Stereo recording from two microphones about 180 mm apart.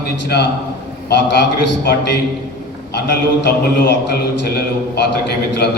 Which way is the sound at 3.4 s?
65° left (ahead or behind).